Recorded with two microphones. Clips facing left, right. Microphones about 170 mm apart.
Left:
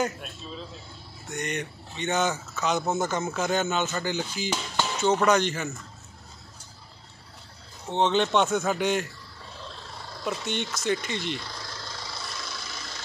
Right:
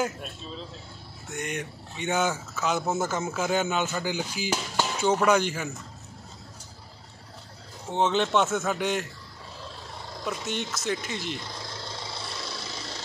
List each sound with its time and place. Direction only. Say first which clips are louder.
1.3 s speech: left 1 dB; 5° right (ahead or behind)
7.9 s speech: left 1 dB; 5° right (ahead or behind)
10.2 s speech: left 1 dB; centre (ahead or behind)
11.9 s a sound: right 2 dB; 25° right (ahead or behind)